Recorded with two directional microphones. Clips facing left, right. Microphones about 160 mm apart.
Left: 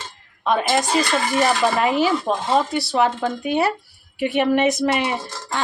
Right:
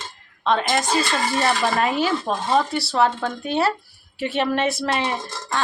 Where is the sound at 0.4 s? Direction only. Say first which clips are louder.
Left 1 dB; 10° left (ahead or behind).